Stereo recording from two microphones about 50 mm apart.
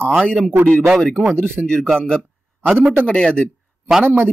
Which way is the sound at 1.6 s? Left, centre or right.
Centre.